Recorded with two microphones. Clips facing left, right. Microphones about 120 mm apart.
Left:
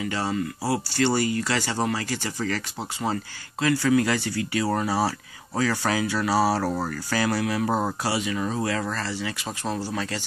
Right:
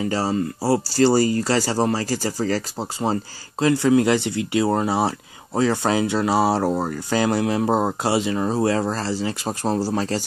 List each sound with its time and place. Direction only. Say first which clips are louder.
0.0 s speech: right 5 dB; 35° right (ahead or behind)